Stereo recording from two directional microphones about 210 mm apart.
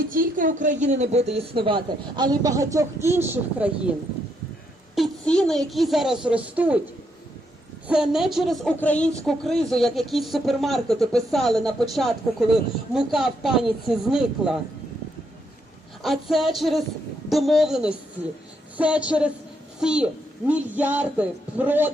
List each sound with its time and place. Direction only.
0.0 s speech: 40° right (ahead or behind); by 3.7 s 10° right (ahead or behind)
4.9 s a man's voice: centre (ahead or behind)
7.9 s a woman's voice: 5° right (ahead or behind)
16.0 s a woman's voice: centre (ahead or behind)